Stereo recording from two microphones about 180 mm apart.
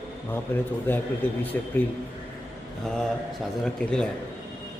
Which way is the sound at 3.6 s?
5° left (ahead or behind).